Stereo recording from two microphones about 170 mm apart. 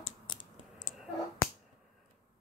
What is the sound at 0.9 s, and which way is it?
Finger snapping, 25° left (ahead or behind).